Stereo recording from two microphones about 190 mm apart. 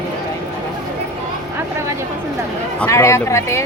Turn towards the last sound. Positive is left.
turn(degrees=15)  # may be behind; listen again after turning